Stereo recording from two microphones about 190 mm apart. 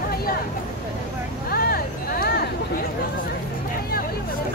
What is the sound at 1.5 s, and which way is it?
Music, 50° left (ahead or behind).